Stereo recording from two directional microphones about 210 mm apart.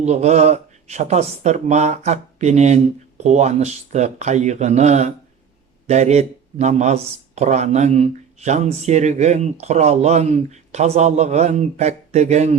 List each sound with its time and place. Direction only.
0.0 s speech: 30° right (ahead or behind)